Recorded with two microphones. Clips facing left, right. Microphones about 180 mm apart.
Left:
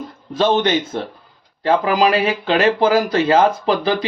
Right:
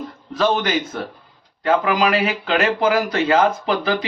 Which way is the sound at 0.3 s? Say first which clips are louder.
Left 3 dB; 25° left (ahead or behind).